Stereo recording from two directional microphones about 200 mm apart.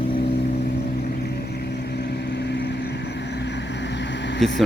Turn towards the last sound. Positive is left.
turn(degrees=0)  # may be behind; listen again after turning